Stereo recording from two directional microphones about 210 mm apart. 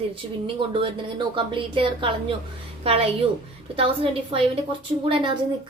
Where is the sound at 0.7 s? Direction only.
25° right (ahead or behind).